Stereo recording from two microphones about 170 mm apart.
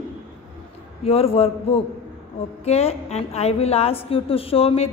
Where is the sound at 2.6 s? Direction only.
40° left (ahead or behind).